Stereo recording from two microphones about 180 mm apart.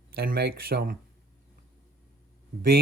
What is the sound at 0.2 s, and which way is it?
Speech, 60° right (ahead or behind).